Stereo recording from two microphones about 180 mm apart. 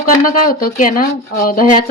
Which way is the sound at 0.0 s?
50° left (ahead or behind).